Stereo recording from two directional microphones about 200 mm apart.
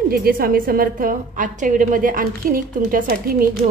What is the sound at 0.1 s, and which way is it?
A woman's voice, 50° right (ahead or behind).